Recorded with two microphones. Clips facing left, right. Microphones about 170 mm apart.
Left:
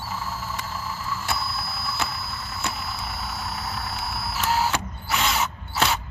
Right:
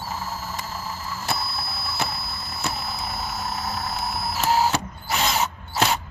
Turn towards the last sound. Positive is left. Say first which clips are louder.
# right 2 dB
turn(degrees=-40)  # may be behind; listen again after turning